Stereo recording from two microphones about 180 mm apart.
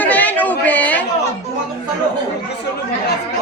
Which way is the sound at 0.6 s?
10° left (ahead or behind).